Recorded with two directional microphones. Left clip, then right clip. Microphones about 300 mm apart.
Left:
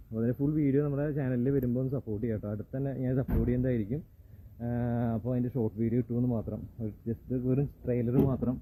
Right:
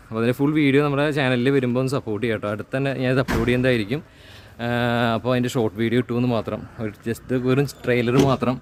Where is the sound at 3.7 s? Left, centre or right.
Right.